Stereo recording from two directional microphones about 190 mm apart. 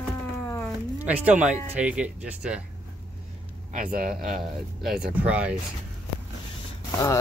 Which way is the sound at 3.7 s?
45° right (ahead or behind).